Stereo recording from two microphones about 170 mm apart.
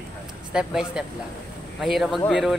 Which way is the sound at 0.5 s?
5° right (ahead or behind).